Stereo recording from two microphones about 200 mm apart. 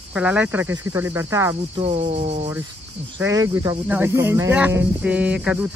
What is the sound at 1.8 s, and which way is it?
Speech, 35° right (ahead or behind).